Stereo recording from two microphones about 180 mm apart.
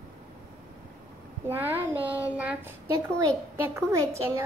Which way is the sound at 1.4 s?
10° right (ahead or behind).